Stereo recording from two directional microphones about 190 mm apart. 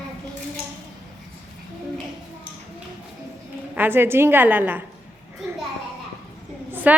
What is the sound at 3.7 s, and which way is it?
A woman's voice, 10° right (ahead or behind).